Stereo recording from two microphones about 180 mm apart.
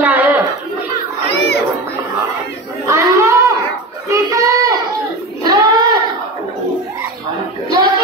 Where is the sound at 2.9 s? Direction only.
15° right (ahead or behind).